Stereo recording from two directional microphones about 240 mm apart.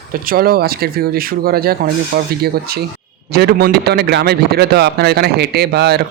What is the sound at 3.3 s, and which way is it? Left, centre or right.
Speech, right.